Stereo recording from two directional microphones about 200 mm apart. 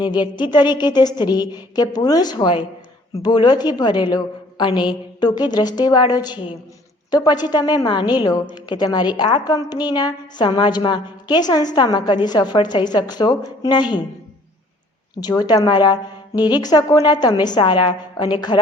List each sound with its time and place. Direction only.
0.0 s a woman's voice: 20° left (ahead or behind)
15.2 s a woman's voice: 20° left (ahead or behind)